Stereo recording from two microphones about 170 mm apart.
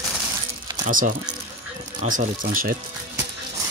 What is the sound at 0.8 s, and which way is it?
Speech, 50° right (ahead or behind).